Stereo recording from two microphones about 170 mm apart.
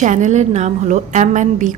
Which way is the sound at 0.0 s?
45° right (ahead or behind).